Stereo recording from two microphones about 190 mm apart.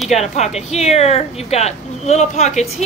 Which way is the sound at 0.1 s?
35° left (ahead or behind).